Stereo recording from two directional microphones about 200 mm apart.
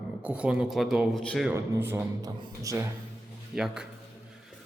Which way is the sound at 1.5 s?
10° right (ahead or behind).